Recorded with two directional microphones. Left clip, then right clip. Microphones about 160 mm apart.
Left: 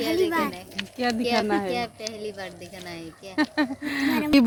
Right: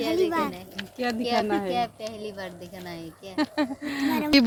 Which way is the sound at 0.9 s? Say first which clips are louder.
Left 1 dB; 30° left (ahead or behind).